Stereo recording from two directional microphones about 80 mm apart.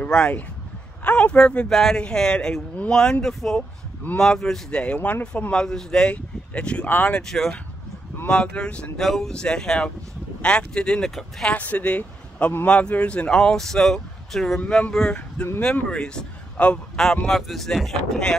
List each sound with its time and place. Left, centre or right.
0.0 s speech: centre
3.5 s speech: left
4.2 s speech: centre
6.9 s speech: left
7.2 s speech: centre
9.0 s speech: centre
11.5 s a man's voice: centre